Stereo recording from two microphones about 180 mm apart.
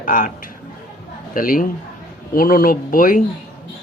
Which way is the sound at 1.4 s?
50° left (ahead or behind).